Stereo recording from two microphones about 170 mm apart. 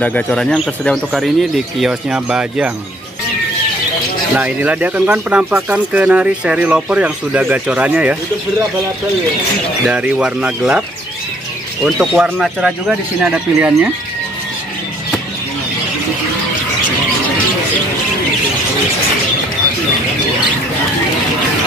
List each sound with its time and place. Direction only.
0.0 s speech: 5° left (ahead or behind)
4.4 s speech: 10° right (ahead or behind)
9.8 s speech: 10° right (ahead or behind)
11.8 s speech: centre (ahead or behind)